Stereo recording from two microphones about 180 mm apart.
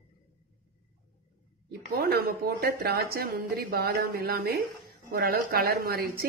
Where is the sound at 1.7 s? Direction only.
60° right (ahead or behind).